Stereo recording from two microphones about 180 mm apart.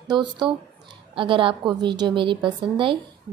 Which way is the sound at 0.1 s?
25° right (ahead or behind).